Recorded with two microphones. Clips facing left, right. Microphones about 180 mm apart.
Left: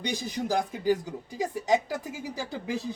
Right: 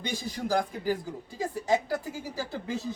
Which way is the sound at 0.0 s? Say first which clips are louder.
Left 2 dB; 20° left (ahead or behind).